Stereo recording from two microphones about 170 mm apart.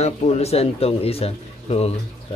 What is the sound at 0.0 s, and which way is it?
Speech, 40° left (ahead or behind).